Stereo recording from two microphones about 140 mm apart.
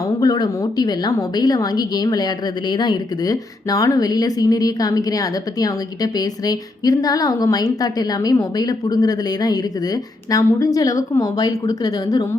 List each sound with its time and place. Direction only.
0.2 s a woman's voice: 30° left (ahead or behind)